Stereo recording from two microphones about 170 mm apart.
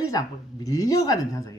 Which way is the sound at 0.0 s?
20° left (ahead or behind).